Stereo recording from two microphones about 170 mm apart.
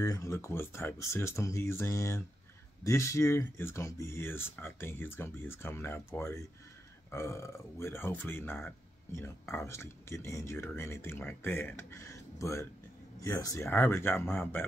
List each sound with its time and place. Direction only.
0.0 s speech: 20° left (ahead or behind)